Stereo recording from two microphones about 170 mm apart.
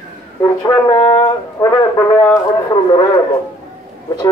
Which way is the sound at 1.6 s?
15° left (ahead or behind).